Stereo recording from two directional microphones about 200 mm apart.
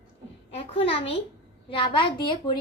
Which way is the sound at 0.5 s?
30° left (ahead or behind).